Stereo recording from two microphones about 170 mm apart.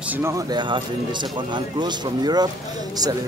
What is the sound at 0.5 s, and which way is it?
A man's voice, 25° right (ahead or behind).